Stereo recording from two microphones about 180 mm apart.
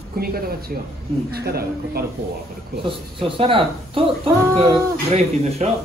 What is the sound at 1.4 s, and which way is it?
Speech, 60° right (ahead or behind).